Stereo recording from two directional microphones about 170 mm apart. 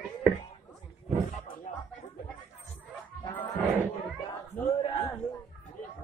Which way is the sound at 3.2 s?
25° left (ahead or behind).